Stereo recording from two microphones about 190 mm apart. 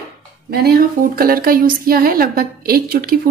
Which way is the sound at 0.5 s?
55° right (ahead or behind).